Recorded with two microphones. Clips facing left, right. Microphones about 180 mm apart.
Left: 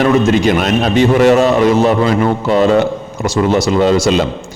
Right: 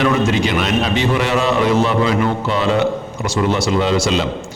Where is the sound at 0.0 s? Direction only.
45° left (ahead or behind).